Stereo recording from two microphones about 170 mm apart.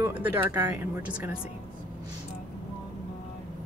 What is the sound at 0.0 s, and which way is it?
Speech, 10° right (ahead or behind).